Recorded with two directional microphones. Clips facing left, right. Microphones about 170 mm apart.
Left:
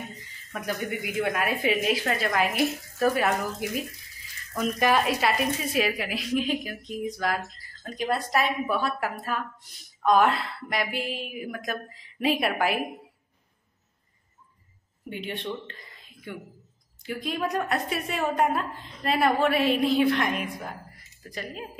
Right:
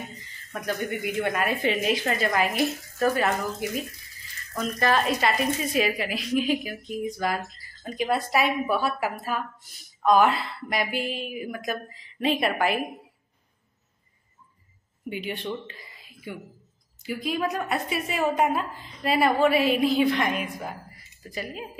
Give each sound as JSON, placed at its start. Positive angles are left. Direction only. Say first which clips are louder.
{"t": 0.5, "sound": "speech", "louder": "right 1 dB", "side_deg": 5}
{"t": 15.0, "sound": "speech", "louder": "right 2 dB", "side_deg": -5}